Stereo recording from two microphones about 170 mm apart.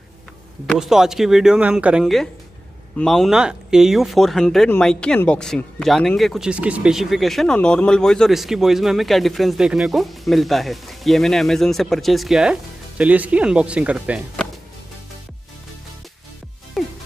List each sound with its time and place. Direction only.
0.7 s speech: 5° right (ahead or behind)
16.8 s music: centre (ahead or behind)